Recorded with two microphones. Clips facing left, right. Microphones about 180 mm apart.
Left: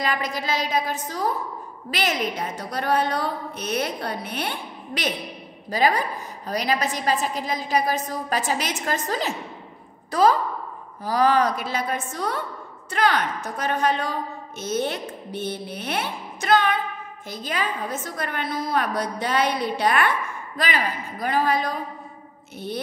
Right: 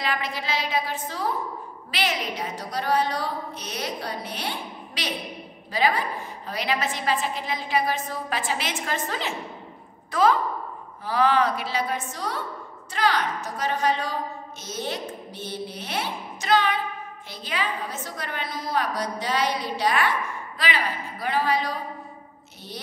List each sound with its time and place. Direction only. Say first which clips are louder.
0.0 s a woman's voice: left 3 dB; 45° left (ahead or behind)
5.7 s a woman's voice: left 2 dB; 45° left (ahead or behind)
20.5 s a woman's voice: left 2 dB; 45° left (ahead or behind)